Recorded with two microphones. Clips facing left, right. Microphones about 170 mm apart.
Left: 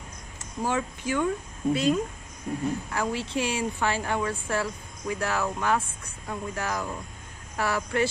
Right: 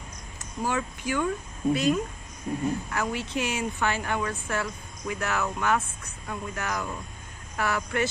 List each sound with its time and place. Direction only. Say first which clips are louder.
0.4 s a woman's voice: left 1 dB; 25° left (ahead or behind)